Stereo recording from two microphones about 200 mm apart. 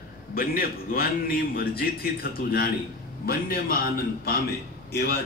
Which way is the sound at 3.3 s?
50° left (ahead or behind).